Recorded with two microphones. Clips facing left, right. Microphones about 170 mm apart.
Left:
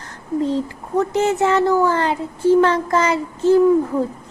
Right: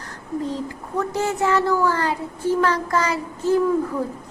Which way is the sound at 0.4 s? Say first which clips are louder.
Left 6 dB; 25° left (ahead or behind).